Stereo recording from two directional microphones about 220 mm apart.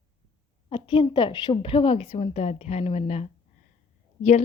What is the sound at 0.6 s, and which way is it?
Speech, 25° left (ahead or behind).